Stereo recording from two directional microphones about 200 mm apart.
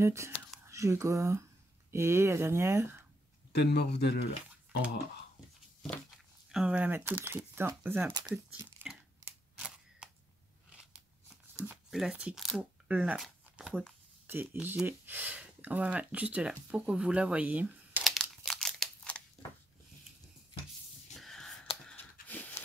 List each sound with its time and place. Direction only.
0.0 s speech: 15° right (ahead or behind)
3.5 s speech: 55° left (ahead or behind)
5.8 s speech: centre (ahead or behind); by 8.4 s 20° right (ahead or behind)
8.5 s tearing: 5° right (ahead or behind)
10.8 s crunch: 5° right (ahead or behind)
11.6 s speech: 5° right (ahead or behind)
21.1 s a sound: centre (ahead or behind)